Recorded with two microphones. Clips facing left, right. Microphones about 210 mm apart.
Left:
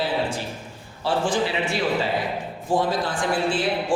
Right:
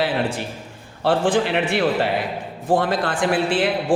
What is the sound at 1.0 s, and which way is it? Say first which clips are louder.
A woman's voice: right 4 dB; 60° right (ahead or behind).